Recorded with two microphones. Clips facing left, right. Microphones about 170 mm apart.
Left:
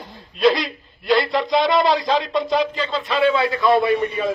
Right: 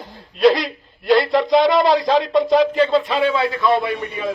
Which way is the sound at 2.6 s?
45° right (ahead or behind).